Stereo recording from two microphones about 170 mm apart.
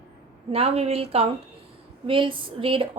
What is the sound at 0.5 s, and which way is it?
Speech, 35° right (ahead or behind).